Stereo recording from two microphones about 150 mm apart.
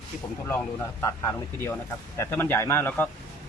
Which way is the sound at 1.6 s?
15° left (ahead or behind).